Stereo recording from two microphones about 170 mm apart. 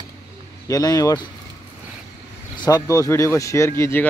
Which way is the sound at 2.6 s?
20° left (ahead or behind).